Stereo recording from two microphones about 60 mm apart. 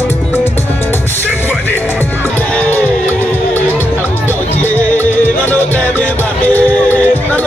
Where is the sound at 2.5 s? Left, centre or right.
Left.